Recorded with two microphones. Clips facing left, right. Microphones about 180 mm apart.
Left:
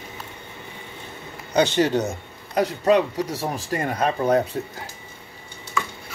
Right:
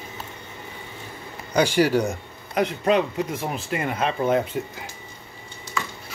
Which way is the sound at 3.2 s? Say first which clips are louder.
Left 1 dB; 90° left.